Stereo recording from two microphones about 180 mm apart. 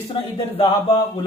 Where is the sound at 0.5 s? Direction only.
30° left (ahead or behind).